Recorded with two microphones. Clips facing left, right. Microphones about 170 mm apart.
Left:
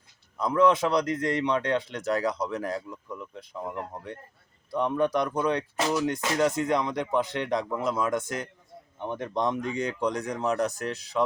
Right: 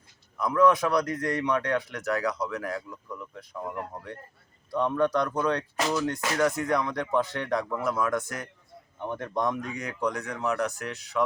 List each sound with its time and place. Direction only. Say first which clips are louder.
0.3 s speech: even; 25° left (ahead or behind)
2.9 s speech: left 1 dB; 15° left (ahead or behind); by 11.2 s 35° left (ahead or behind)